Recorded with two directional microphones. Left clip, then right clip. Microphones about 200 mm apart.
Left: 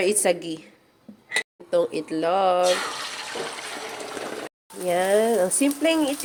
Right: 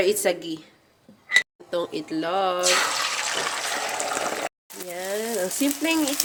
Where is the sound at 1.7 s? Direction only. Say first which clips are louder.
Left 4 dB; 5° right (ahead or behind).